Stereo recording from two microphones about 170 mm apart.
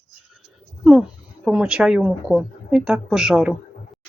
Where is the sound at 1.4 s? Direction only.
5° right (ahead or behind).